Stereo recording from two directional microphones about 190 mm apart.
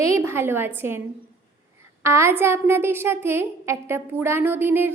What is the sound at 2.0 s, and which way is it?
A woman's voice, 15° right (ahead or behind).